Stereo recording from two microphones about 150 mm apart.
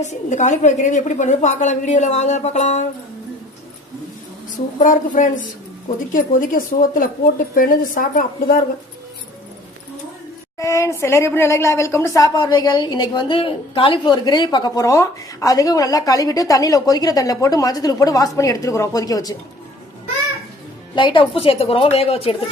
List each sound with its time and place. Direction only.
0.0 s a woman's voice: 50° left (ahead or behind)
4.8 s a woman's voice: 60° left (ahead or behind)
10.6 s a woman's voice: 20° left (ahead or behind)
20.9 s a woman's voice: 35° left (ahead or behind)